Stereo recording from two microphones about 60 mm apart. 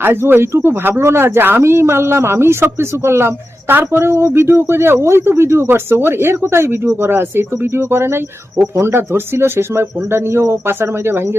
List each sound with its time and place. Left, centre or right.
0.0 s speech: right
3.9 s speech: right